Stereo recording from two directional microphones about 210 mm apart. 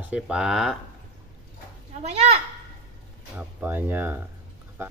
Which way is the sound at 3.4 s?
10° right (ahead or behind).